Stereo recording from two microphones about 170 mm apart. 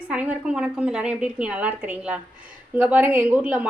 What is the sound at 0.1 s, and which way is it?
A woman's voice, 5° right (ahead or behind).